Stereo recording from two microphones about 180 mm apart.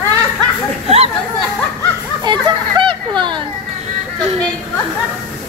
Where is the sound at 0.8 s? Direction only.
35° right (ahead or behind).